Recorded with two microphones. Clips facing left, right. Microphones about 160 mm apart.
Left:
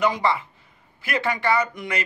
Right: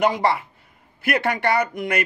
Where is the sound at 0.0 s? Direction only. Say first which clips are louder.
Right 2 dB; 65° right (ahead or behind).